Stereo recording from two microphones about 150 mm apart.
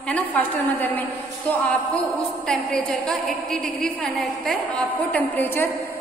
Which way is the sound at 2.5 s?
5° left (ahead or behind).